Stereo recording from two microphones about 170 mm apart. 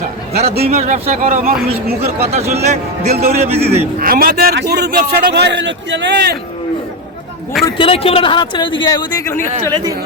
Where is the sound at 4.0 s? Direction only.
60° right (ahead or behind); by 6.4 s 90° right.